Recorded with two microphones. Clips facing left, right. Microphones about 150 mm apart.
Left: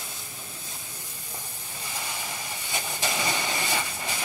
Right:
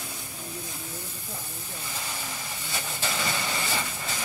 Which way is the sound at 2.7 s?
15° left (ahead or behind).